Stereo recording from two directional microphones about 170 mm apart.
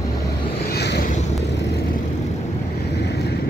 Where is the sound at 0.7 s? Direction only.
75° left (ahead or behind).